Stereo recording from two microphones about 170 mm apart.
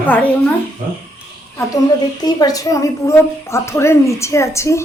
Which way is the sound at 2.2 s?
20° left (ahead or behind).